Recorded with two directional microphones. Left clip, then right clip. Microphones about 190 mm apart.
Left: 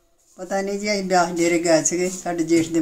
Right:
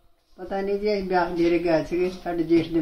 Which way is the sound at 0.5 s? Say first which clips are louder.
Left 1 dB; 20° left (ahead or behind).